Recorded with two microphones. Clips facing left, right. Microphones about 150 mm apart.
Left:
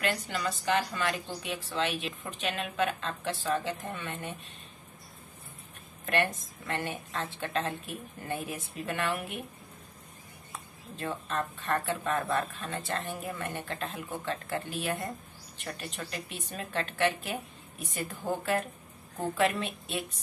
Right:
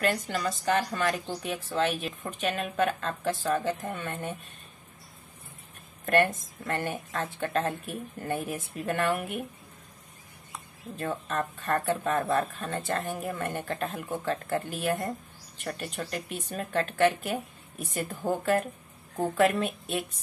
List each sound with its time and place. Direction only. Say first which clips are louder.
0.0 s speech: right 3 dB; 40° right (ahead or behind)
6.0 s speech: right 5 dB; 45° right (ahead or behind)
11.0 s speech: right 2 dB; 50° right (ahead or behind)